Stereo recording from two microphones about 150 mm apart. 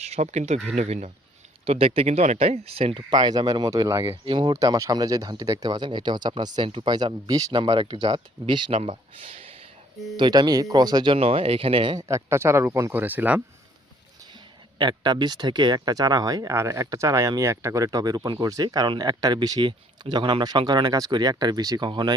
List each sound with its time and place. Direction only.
0.0 s speech: 45° right (ahead or behind); by 4.2 s 20° right (ahead or behind)
4.3 s speech: 30° right (ahead or behind)
10.2 s speech: 30° right (ahead or behind)
12.0 s speech: 20° right (ahead or behind)
14.8 s speech: 30° right (ahead or behind)